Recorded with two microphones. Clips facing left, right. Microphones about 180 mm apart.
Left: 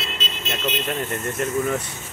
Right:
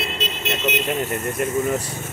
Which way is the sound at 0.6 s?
5° right (ahead or behind).